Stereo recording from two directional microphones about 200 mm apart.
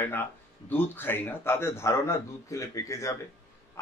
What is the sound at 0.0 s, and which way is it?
A man's voice, 10° left (ahead or behind).